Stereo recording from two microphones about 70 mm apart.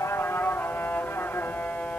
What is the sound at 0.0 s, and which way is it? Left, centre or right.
Music, left.